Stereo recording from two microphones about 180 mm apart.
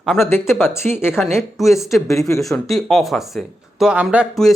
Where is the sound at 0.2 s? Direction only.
15° left (ahead or behind).